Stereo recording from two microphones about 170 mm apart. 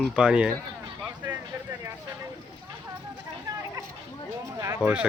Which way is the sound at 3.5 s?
20° right (ahead or behind).